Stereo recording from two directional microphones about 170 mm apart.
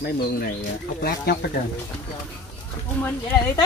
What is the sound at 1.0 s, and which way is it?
Speech, 65° left (ahead or behind).